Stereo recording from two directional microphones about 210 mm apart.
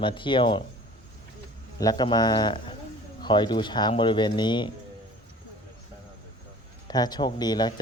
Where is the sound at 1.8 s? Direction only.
20° left (ahead or behind).